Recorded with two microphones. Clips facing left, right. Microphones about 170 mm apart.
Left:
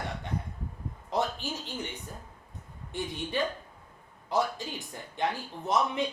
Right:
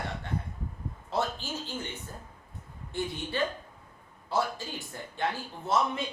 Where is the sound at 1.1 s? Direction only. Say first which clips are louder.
Left 1 dB; 15° left (ahead or behind).